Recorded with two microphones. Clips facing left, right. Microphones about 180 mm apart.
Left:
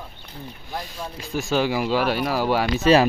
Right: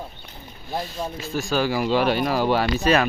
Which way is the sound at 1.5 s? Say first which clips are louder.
Left 1 dB; 20° left (ahead or behind).